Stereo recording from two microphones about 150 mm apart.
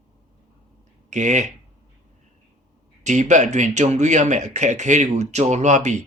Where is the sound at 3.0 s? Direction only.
55° right (ahead or behind).